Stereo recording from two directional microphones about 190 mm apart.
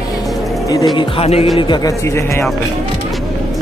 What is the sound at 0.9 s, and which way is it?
Music, 30° left (ahead or behind).